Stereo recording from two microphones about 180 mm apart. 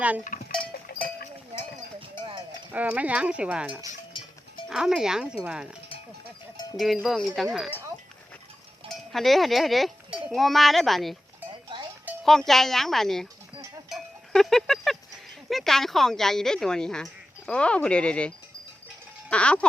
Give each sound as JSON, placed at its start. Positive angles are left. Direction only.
{"t": 0.3, "sound": "livestock", "side_deg": 45}
{"t": 0.7, "sound": "cowbell", "side_deg": 60}
{"t": 2.0, "sound": "clip-clop", "side_deg": -30}
{"t": 2.7, "sound": "speech", "side_deg": -10}
{"t": 6.7, "sound": "speech", "side_deg": 0}
{"t": 8.9, "sound": "cowbell", "side_deg": 0}
{"t": 10.3, "sound": "speech", "side_deg": 0}
{"t": 12.2, "sound": "speech", "side_deg": 0}
{"t": 13.9, "sound": "cowbell", "side_deg": 0}
{"t": 15.4, "sound": "speech", "side_deg": 0}